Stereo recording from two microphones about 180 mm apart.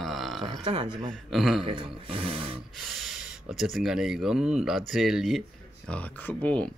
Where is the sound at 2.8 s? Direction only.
Centre (ahead or behind).